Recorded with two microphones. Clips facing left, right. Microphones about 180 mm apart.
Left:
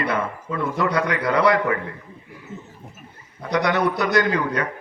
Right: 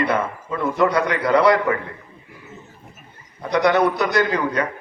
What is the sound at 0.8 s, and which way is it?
Speech, 30° right (ahead or behind).